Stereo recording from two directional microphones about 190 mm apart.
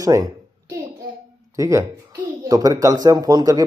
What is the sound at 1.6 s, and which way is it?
A man's voice, 15° right (ahead or behind).